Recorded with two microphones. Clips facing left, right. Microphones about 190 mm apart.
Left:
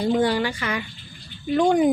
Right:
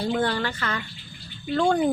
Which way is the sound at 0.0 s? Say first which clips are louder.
Left 4 dB; 15° left (ahead or behind).